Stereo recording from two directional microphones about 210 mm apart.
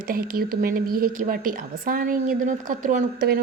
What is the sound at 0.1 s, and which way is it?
A woman's voice, 45° right (ahead or behind).